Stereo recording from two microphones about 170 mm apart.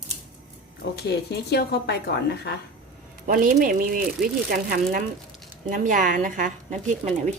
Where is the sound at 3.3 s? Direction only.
55° right (ahead or behind).